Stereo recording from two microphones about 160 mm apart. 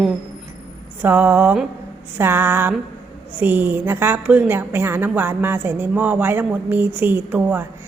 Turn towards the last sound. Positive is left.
turn(degrees=-10)  # may be behind; listen again after turning